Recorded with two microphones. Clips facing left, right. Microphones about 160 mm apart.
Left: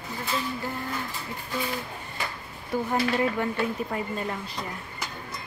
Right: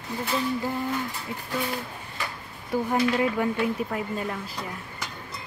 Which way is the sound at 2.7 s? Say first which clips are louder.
Right 2 dB; 10° right (ahead or behind).